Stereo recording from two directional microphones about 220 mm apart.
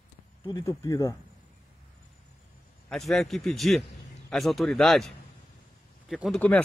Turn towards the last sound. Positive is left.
turn(degrees=5)  # may be behind; listen again after turning